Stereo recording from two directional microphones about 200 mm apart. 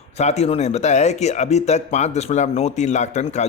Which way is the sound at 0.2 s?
35° left (ahead or behind).